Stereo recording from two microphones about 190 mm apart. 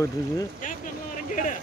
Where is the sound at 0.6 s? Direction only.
45° left (ahead or behind).